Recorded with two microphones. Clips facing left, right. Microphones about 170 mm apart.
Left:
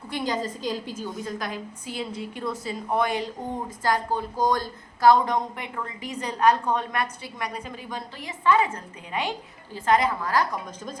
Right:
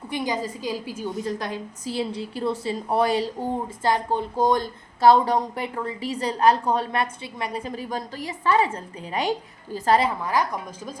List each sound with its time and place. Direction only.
0.1 s a woman's voice: 10° right (ahead or behind)
1.4 s a woman's voice: 30° right (ahead or behind)